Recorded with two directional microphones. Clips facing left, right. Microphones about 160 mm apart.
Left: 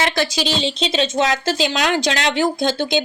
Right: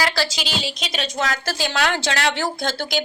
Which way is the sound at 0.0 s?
25° left (ahead or behind).